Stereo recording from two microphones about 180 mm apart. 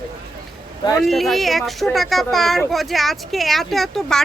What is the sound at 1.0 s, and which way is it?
Speech, centre (ahead or behind).